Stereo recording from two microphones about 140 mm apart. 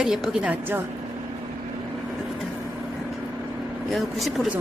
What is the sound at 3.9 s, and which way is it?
Speech, centre (ahead or behind).